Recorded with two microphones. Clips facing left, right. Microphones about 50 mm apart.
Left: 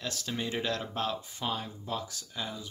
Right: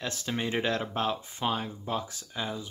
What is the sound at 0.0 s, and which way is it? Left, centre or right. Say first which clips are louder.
Speech: right 3 dB; right.